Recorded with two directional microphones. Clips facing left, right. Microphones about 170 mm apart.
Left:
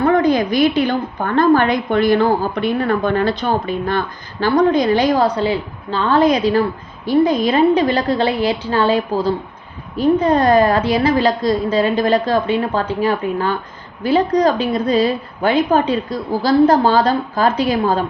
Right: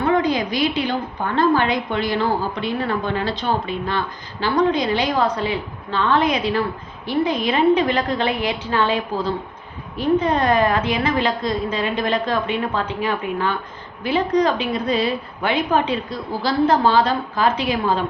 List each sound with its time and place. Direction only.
0.0 s a woman's voice: 50° left (ahead or behind)